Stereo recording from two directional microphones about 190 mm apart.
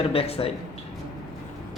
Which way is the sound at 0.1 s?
30° left (ahead or behind).